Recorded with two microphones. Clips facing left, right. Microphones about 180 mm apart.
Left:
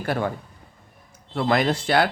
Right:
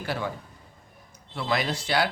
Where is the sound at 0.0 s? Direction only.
50° left (ahead or behind).